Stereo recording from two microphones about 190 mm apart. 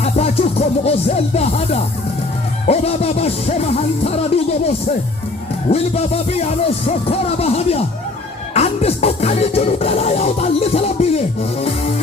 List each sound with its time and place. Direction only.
0.0 s music: 35° left (ahead or behind)
5.7 s music: 35° left (ahead or behind)